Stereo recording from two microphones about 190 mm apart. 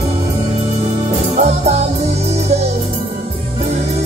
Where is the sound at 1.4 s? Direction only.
35° right (ahead or behind).